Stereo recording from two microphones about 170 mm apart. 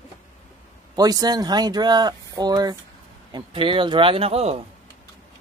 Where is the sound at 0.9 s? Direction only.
20° right (ahead or behind).